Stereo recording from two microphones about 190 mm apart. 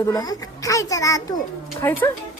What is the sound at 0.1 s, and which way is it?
A woman's voice, 20° left (ahead or behind).